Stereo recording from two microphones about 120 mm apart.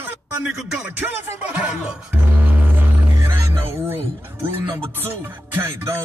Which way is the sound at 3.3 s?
20° right (ahead or behind).